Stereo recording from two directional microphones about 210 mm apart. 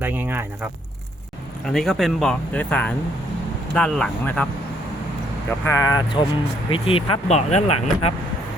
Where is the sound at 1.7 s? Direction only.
Centre (ahead or behind).